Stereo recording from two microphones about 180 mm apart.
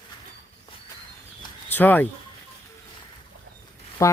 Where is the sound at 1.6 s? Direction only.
10° left (ahead or behind).